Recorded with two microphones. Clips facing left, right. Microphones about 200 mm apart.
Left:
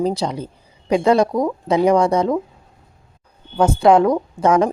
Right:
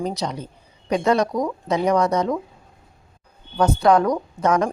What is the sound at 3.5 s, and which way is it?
Speech, 25° left (ahead or behind).